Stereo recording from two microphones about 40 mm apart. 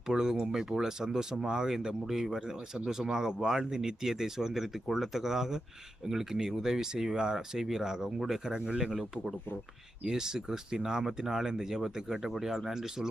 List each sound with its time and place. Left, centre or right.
0.1 s speech: centre